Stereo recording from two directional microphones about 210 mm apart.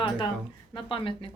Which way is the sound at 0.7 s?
25° left (ahead or behind).